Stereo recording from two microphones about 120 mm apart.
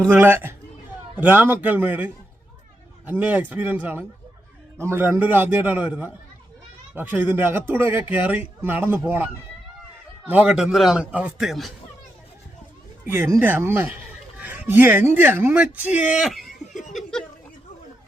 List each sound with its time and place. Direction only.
0.0 s a man's voice: 15° right (ahead or behind)
10.7 s a man's voice: centre (ahead or behind)
13.4 s a man's voice: 15° right (ahead or behind); by 17.2 s 5° left (ahead or behind)